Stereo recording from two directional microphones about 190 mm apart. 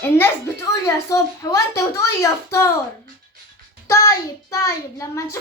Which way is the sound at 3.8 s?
15° left (ahead or behind).